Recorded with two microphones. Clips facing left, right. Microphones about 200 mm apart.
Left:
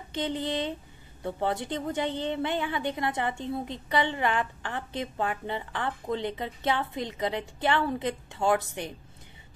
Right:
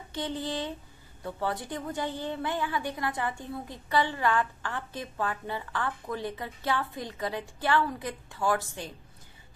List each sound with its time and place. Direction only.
0.1 s a woman's voice: 20° left (ahead or behind)